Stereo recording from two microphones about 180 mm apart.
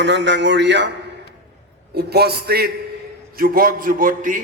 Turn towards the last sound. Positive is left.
turn(degrees=-45)  # may be behind; listen again after turning